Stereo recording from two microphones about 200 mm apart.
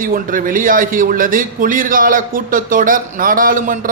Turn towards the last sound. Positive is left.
turn(degrees=-40)  # may be behind; listen again after turning